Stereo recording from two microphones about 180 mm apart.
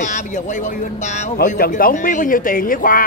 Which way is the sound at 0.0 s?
45° left (ahead or behind).